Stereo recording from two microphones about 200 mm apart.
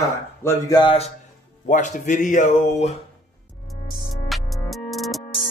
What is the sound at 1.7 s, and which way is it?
Speech, 40° left (ahead or behind).